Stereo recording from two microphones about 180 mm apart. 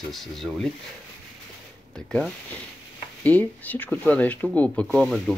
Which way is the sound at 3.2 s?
10° left (ahead or behind).